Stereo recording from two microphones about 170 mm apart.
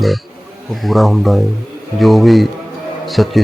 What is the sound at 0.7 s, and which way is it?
Speech, centre (ahead or behind).